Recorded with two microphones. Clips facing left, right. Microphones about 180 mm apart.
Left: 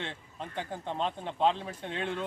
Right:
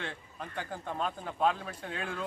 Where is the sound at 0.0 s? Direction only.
25° left (ahead or behind).